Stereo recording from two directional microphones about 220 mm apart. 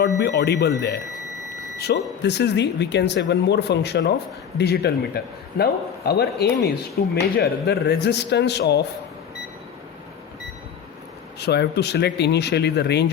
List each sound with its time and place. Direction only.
0.0 s speech: 50° left (ahead or behind)
11.3 s speech: 50° left (ahead or behind)